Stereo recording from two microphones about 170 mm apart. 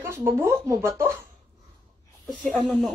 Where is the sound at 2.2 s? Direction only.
Centre (ahead or behind).